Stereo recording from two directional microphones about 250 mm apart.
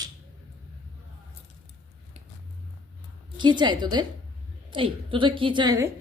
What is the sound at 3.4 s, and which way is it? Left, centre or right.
A woman's voice, centre.